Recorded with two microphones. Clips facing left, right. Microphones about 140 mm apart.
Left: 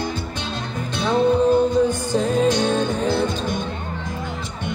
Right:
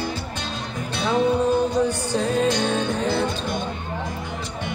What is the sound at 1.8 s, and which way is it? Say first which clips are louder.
Music: left 2 dB; 50° left (ahead or behind).